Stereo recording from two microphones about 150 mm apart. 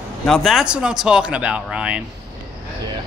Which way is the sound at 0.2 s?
Centre (ahead or behind).